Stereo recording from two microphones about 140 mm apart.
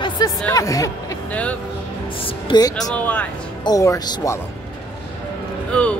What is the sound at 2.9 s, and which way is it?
Speech, 10° left (ahead or behind).